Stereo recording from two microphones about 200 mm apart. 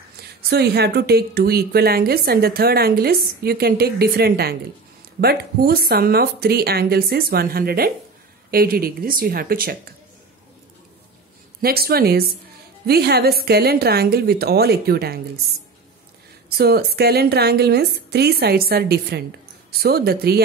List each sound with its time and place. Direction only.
0.5 s a woman's voice: 55° right (ahead or behind)
11.6 s a woman's voice: 50° right (ahead or behind)
16.5 s a woman's voice: 50° right (ahead or behind)